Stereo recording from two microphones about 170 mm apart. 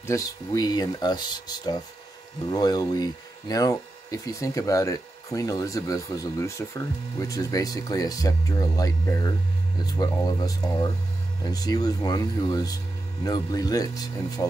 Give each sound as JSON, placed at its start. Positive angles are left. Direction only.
{"t": 0.0, "sound": "speech", "side_deg": 20}